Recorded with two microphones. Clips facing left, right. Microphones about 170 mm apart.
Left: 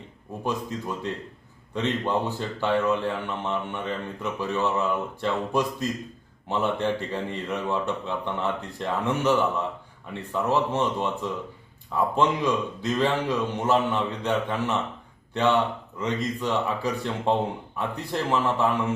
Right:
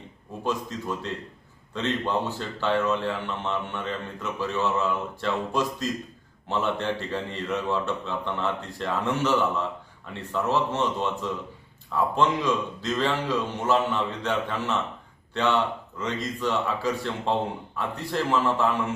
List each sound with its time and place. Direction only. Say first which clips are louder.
0.4 s speech: even; 15° left (ahead or behind)